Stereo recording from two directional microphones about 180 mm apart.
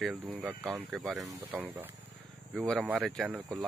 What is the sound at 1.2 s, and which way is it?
Speech, 20° right (ahead or behind).